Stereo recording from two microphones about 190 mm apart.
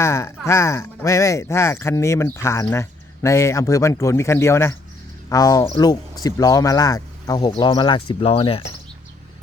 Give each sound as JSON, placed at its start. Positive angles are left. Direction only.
{"t": 0.0, "sound": "speech", "side_deg": 15}